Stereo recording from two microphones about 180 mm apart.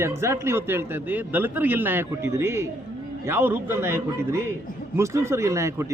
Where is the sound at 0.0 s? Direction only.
15° right (ahead or behind).